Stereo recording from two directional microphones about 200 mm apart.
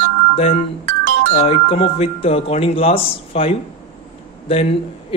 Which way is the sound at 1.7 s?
30° left (ahead or behind).